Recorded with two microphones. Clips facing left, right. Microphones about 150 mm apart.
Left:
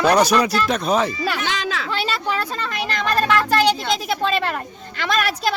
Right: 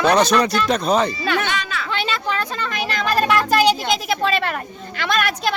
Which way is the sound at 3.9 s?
Centre (ahead or behind).